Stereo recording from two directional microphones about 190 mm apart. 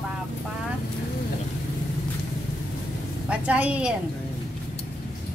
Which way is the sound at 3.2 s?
5° right (ahead or behind).